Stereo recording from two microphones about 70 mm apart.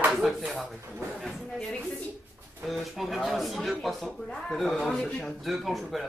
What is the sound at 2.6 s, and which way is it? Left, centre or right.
A woman's voice, centre.